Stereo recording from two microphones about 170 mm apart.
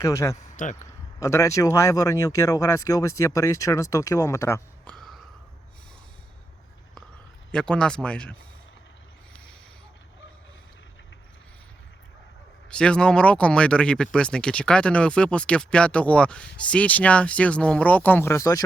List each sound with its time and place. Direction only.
0.0 s speech: 15° left (ahead or behind)
0.3 s speech: 45° left (ahead or behind)
1.2 s speech: 15° left (ahead or behind)
4.9 s a sound: centre (ahead or behind)
7.5 s speech: 5° left (ahead or behind)
12.7 s speech: 5° left (ahead or behind)